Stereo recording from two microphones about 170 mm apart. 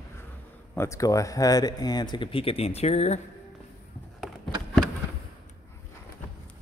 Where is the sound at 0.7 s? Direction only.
20° left (ahead or behind); by 3.2 s 40° left (ahead or behind).